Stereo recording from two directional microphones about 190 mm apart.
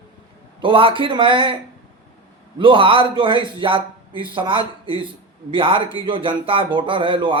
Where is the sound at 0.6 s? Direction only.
30° right (ahead or behind).